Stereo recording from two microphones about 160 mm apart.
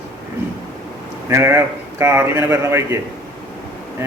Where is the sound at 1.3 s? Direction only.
15° right (ahead or behind).